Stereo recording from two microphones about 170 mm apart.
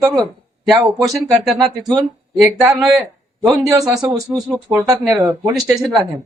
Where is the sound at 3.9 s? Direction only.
20° right (ahead or behind).